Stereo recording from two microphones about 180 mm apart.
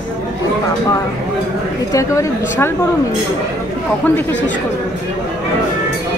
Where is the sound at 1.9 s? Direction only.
15° left (ahead or behind).